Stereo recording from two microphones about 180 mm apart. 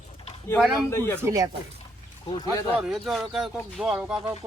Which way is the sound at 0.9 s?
15° left (ahead or behind).